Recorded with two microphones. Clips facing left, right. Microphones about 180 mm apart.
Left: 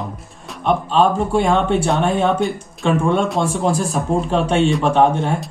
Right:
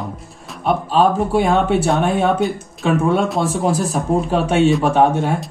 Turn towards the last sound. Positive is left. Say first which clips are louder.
# right 1 dB
turn(degrees=-10)  # may be behind; listen again after turning